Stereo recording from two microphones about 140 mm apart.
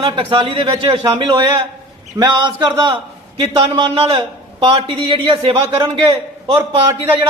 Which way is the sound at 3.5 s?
35° right (ahead or behind).